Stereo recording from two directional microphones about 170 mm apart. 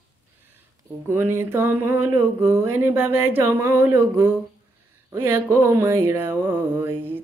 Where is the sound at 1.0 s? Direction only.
15° right (ahead or behind).